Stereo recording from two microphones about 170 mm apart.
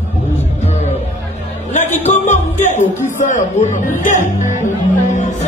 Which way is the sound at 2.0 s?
45° left (ahead or behind).